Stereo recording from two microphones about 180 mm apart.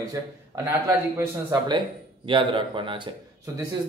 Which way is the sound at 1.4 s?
25° right (ahead or behind).